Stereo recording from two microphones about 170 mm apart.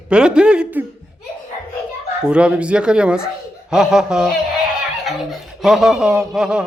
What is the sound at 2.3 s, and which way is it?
A woman's voice, 5° right (ahead or behind).